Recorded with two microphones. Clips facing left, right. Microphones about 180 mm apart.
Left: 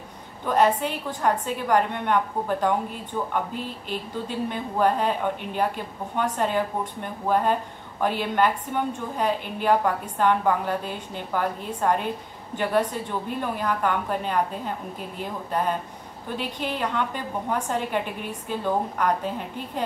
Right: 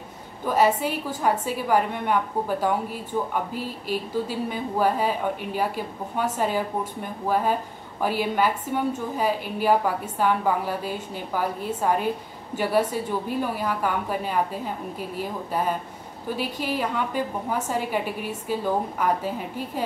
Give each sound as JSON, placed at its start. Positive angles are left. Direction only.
{"t": 0.5, "sound": "a woman's voice", "side_deg": -5}
{"t": 15.5, "sound": "a woman's voice", "side_deg": -5}